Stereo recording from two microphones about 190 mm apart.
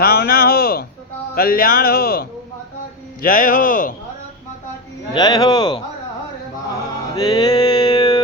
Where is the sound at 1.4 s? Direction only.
50° left (ahead or behind).